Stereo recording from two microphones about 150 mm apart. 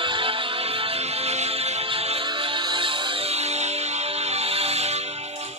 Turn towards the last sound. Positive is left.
turn(degrees=-45)  # may be behind; listen again after turning